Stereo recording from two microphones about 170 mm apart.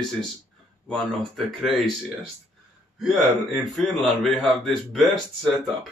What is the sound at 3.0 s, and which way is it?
A man's voice, centre (ahead or behind).